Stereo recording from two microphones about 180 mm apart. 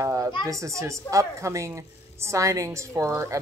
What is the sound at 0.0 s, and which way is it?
Speech, 20° right (ahead or behind).